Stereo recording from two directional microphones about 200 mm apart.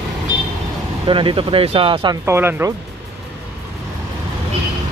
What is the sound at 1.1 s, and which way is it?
Speech, 25° right (ahead or behind).